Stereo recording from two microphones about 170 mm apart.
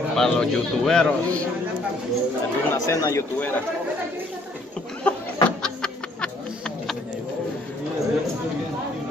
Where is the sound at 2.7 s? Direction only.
20° left (ahead or behind).